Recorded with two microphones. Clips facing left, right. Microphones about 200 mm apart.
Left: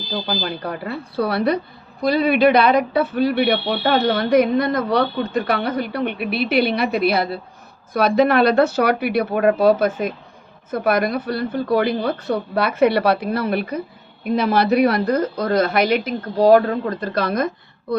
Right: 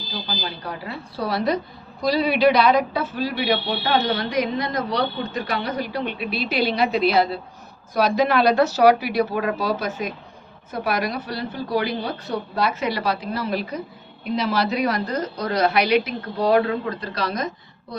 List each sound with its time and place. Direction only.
0.4 s a man's voice: 60° left (ahead or behind)